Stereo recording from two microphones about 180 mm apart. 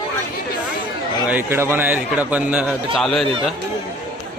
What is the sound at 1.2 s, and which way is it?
A man's voice, 10° right (ahead or behind).